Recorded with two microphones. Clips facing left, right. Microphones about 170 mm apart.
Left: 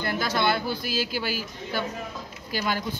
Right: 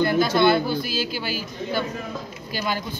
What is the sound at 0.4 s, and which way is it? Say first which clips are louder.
A man's voice: right 5 dB; 10° left (ahead or behind).